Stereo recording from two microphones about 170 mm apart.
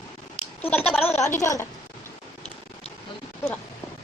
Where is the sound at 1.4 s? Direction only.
15° left (ahead or behind).